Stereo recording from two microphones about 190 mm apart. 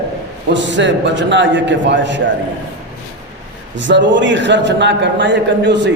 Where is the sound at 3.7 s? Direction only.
70° right (ahead or behind).